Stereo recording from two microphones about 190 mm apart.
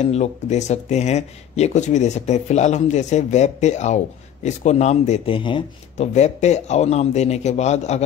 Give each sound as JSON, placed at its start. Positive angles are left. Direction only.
{"t": 0.0, "sound": "speech", "side_deg": 35}